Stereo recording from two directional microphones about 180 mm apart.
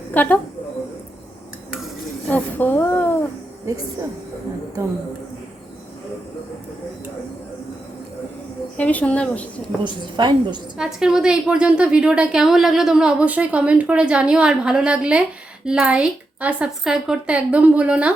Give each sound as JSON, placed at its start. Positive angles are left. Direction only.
{"t": 0.1, "sound": "a woman's voice", "side_deg": 10}
{"t": 2.3, "sound": "a woman's voice", "side_deg": 10}
{"t": 8.8, "sound": "a woman's voice", "side_deg": 10}
{"t": 9.8, "sound": "a woman's voice", "side_deg": -25}
{"t": 10.8, "sound": "a woman's voice", "side_deg": -5}